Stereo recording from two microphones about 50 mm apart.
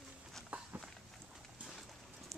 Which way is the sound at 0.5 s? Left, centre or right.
Right.